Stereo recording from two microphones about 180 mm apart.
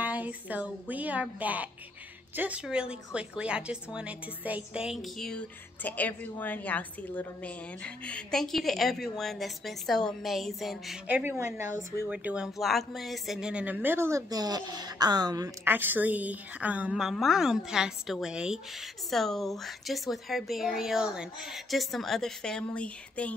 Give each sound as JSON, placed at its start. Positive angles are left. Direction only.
{"t": 0.0, "sound": "speech", "side_deg": -10}